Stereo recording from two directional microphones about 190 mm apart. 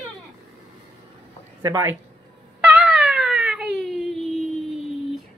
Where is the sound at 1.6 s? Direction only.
15° right (ahead or behind).